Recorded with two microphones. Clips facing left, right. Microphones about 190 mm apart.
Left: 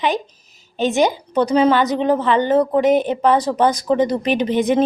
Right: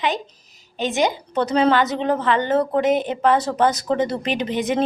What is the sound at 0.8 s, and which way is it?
Speech, 15° right (ahead or behind).